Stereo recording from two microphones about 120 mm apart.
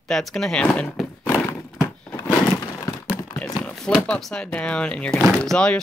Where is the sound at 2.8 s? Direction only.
30° left (ahead or behind).